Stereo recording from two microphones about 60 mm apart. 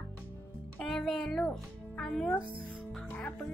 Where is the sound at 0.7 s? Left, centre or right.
Centre.